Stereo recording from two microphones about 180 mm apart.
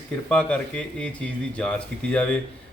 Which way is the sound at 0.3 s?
5° left (ahead or behind).